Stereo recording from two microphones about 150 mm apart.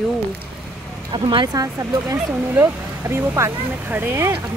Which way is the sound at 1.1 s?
30° right (ahead or behind).